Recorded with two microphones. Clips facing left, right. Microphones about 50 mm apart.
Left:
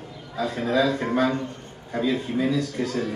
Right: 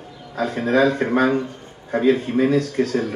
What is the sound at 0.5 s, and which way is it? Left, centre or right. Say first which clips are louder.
Speech: right 5 dB; right.